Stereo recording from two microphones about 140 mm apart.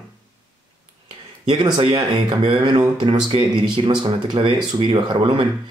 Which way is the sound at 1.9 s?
30° right (ahead or behind).